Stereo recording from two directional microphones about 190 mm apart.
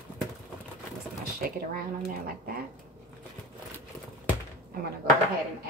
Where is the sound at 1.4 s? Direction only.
50° right (ahead or behind).